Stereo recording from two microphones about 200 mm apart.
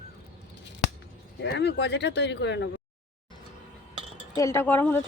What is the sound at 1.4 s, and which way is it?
Speech, 55° left (ahead or behind).